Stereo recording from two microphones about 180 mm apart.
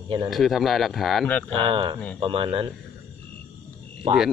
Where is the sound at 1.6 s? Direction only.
30° right (ahead or behind).